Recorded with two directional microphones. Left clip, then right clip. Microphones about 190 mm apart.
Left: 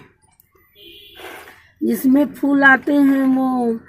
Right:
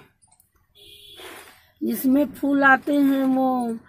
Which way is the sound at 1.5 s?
15° right (ahead or behind).